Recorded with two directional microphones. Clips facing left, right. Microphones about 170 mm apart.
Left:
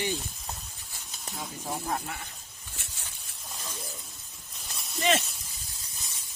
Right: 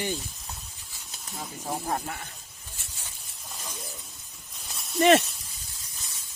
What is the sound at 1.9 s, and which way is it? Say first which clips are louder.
Speech: right 2 dB; 55° right (ahead or behind).